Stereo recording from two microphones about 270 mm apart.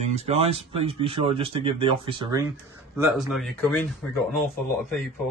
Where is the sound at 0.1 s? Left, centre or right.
Right.